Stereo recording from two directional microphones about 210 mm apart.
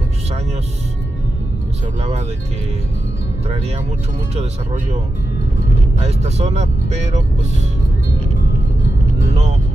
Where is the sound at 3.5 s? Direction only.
30° right (ahead or behind).